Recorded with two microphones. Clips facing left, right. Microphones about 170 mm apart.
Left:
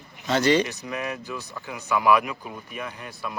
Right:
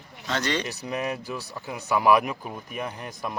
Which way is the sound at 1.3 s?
40° right (ahead or behind).